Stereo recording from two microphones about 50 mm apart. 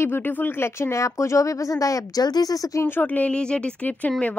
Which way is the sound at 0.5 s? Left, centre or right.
Left.